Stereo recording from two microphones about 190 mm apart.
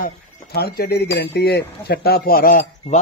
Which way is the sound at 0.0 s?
55° left (ahead or behind).